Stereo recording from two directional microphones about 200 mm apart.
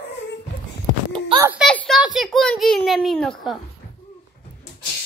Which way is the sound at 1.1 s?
25° right (ahead or behind).